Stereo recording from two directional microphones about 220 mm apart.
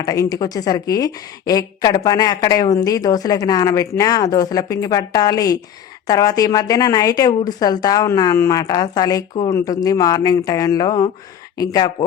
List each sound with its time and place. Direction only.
0.0 s a woman's voice: 15° left (ahead or behind)